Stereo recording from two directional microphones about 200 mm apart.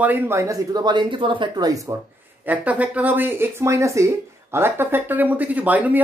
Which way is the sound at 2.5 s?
5° right (ahead or behind).